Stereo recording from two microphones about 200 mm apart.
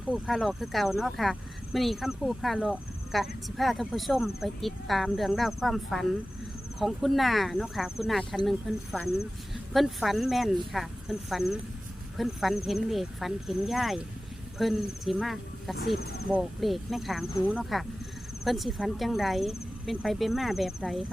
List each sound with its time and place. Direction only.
0.1 s speech: centre (ahead or behind)
16.0 s speech: 55° left (ahead or behind)
16.3 s speech: centre (ahead or behind)